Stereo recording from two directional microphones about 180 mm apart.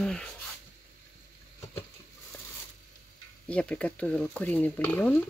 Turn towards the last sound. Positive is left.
turn(degrees=10)  # may be behind; listen again after turning